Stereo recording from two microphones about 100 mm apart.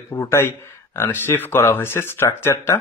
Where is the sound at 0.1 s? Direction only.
25° left (ahead or behind).